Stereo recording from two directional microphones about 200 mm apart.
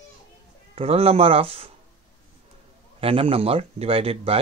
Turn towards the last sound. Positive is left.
turn(degrees=-30)  # may be behind; listen again after turning